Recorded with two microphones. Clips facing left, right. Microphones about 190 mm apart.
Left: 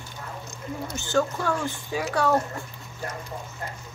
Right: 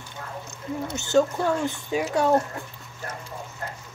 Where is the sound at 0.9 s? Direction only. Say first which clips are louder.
Right 4 dB; 20° right (ahead or behind).